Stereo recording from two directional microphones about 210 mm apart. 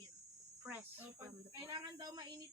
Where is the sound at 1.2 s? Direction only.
20° right (ahead or behind).